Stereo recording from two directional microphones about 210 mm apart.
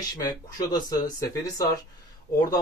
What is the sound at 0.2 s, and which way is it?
Speech, 20° left (ahead or behind).